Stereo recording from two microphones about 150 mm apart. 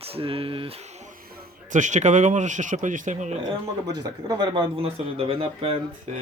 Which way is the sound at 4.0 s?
25° right (ahead or behind).